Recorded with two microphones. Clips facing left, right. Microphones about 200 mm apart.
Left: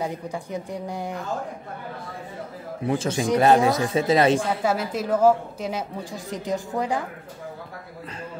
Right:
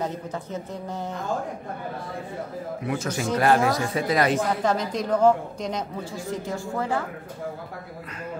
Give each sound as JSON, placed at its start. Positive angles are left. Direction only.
{"t": 0.0, "sound": "a man's voice", "side_deg": 10}
{"t": 2.9, "sound": "speech", "side_deg": 30}
{"t": 3.2, "sound": "speech", "side_deg": 20}
{"t": 4.6, "sound": "a man's voice", "side_deg": 5}
{"t": 6.1, "sound": "a man's voice", "side_deg": 20}